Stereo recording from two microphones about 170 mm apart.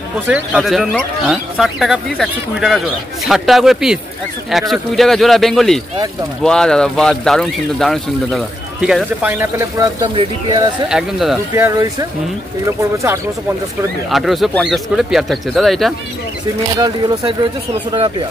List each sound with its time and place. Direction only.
0.3 s speech: 5° right (ahead or behind); by 10.7 s 25° right (ahead or behind)
10.9 s speech: 5° right (ahead or behind)
11.5 s speech: 15° right (ahead or behind)
14.1 s speech: centre (ahead or behind)
16.7 s speech: 20° right (ahead or behind)